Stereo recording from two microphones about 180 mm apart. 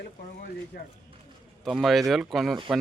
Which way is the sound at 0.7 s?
55° left (ahead or behind).